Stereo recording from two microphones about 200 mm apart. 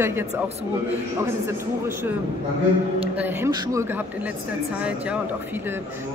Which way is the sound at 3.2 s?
15° right (ahead or behind).